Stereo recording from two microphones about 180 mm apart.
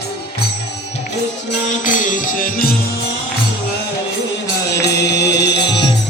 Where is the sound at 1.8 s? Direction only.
45° left (ahead or behind).